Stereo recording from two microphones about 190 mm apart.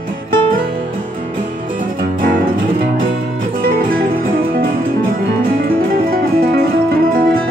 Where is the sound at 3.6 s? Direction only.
50° right (ahead or behind).